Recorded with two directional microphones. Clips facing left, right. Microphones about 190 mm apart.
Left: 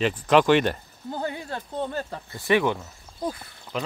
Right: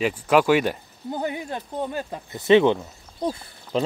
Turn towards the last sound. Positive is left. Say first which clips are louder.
# right 6 dB
turn(degrees=-25)  # may be behind; listen again after turning